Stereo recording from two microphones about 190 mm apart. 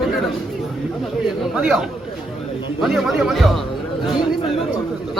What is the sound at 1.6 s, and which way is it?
A man's voice, 10° right (ahead or behind).